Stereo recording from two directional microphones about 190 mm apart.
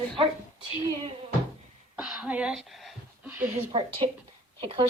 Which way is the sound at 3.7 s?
30° right (ahead or behind).